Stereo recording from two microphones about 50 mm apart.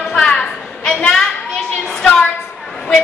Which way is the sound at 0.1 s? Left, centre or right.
Centre.